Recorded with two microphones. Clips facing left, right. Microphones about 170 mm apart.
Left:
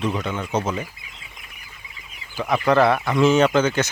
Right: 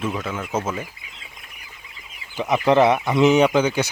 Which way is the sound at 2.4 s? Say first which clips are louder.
Right 1 dB; 20° right (ahead or behind).